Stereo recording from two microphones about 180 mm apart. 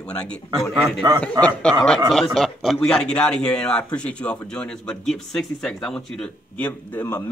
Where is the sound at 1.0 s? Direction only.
20° right (ahead or behind).